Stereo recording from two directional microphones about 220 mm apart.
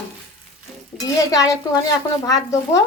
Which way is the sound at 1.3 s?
15° left (ahead or behind).